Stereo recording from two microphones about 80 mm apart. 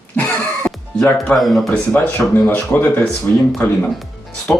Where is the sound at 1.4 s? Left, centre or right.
Centre.